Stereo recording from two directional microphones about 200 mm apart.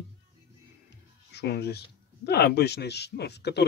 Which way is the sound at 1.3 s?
55° left (ahead or behind).